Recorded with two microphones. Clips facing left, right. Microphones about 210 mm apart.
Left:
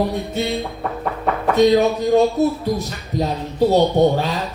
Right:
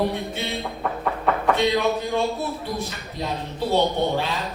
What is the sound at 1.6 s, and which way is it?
Speech, 40° left (ahead or behind).